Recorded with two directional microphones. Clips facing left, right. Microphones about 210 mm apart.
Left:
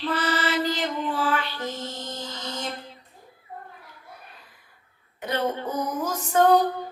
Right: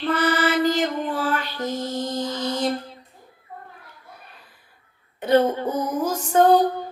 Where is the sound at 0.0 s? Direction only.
50° right (ahead or behind); by 2.7 s 35° right (ahead or behind).